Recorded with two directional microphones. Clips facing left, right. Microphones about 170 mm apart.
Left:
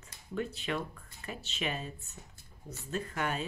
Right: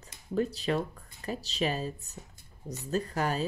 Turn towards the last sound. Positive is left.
turn(degrees=-35)  # may be behind; listen again after turning